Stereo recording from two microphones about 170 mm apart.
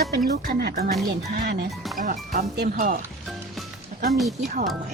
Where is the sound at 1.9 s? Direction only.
50° right (ahead or behind).